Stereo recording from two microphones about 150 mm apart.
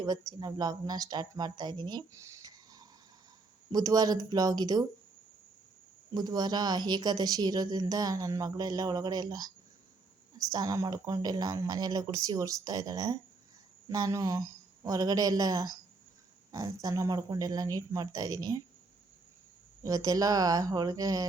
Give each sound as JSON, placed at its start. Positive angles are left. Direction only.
{"t": 0.0, "sound": "a woman's voice", "side_deg": -25}
{"t": 6.1, "sound": "a woman's voice", "side_deg": -25}
{"t": 19.8, "sound": "a woman's voice", "side_deg": -25}